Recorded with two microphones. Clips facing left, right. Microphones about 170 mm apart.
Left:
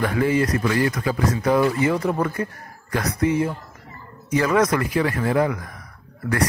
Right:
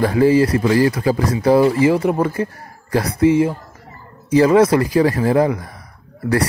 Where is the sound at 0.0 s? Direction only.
30° right (ahead or behind).